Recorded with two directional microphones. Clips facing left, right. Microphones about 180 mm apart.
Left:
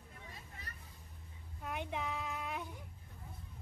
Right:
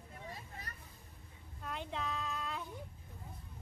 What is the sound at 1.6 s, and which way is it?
Speech, 15° left (ahead or behind).